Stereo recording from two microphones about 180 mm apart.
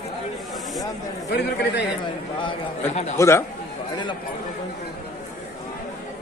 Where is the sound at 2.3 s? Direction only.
30° left (ahead or behind).